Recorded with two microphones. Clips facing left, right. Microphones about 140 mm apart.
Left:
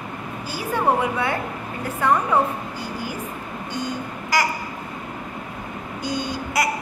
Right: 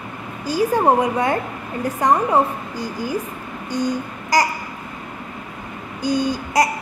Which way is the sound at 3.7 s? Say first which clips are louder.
Right 7 dB; 40° right (ahead or behind).